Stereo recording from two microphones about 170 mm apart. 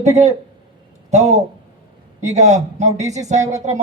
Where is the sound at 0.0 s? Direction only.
40° right (ahead or behind).